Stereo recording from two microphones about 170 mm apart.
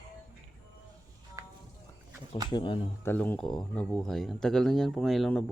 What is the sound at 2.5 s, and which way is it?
Speech, 30° left (ahead or behind).